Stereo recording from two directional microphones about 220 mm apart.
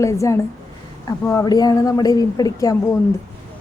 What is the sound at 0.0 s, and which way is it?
A woman's voice, 15° left (ahead or behind).